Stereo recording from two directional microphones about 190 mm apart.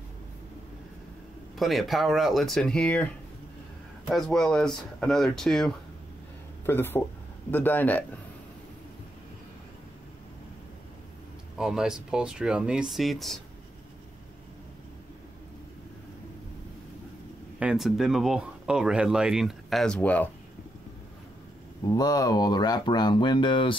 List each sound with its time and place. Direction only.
1.6 s speech: centre (ahead or behind)
4.1 s speech: centre (ahead or behind)
11.5 s speech: 5° right (ahead or behind)
17.6 s speech: 5° right (ahead or behind)
21.9 s speech: 20° left (ahead or behind)